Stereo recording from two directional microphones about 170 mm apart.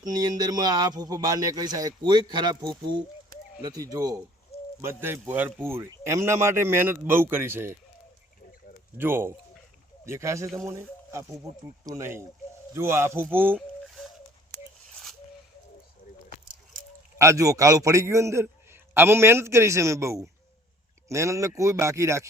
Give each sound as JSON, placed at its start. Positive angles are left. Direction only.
{"t": 0.0, "sound": "a man's voice", "side_deg": -20}
{"t": 9.0, "sound": "a man's voice", "side_deg": -10}
{"t": 13.6, "sound": "a sound", "side_deg": 0}
{"t": 17.2, "sound": "a man's voice", "side_deg": -20}